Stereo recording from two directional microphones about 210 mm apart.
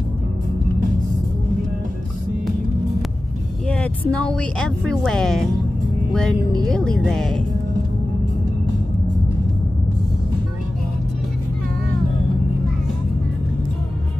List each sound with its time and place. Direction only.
3.6 s speech: 5° left (ahead or behind)